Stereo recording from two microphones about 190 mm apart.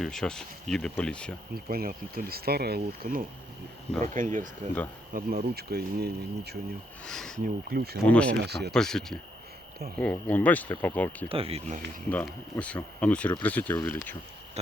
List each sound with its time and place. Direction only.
0.0 s speech: centre (ahead or behind)
1.5 s speech: 50° right (ahead or behind)
5.1 s speech: 55° right (ahead or behind)
7.0 s speech: 5° left (ahead or behind)
7.4 s speech: 55° right (ahead or behind)
8.0 s speech: 5° left (ahead or behind)
8.4 s speech: 60° right (ahead or behind)
8.7 s speech: 5° left (ahead or behind)
11.3 s speech: 30° right (ahead or behind)
12.0 s speech: 5° left (ahead or behind)